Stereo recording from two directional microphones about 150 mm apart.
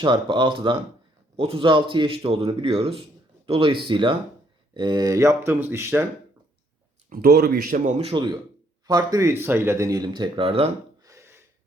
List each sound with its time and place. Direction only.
0.0 s a man's voice: 35° right (ahead or behind)
7.1 s speech: 85° right
7.9 s speech: 50° right (ahead or behind)
8.1 s speech: 30° right (ahead or behind)
11.0 s a sound: 20° right (ahead or behind)